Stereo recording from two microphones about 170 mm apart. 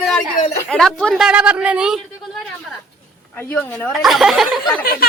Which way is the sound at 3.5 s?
10° left (ahead or behind).